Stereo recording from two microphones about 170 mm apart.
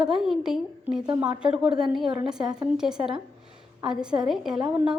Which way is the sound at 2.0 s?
30° right (ahead or behind).